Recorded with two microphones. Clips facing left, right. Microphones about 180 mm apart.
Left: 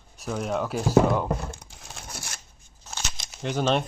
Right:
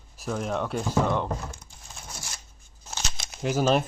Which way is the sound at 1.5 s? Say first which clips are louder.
Left 4 dB; 70° left (ahead or behind).